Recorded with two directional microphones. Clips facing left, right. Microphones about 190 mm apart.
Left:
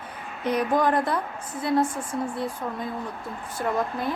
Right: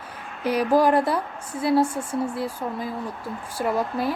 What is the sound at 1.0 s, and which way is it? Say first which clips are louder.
Speech: right 2 dB; 10° right (ahead or behind).